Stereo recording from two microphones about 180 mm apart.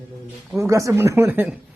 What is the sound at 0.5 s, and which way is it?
Speech, 15° right (ahead or behind).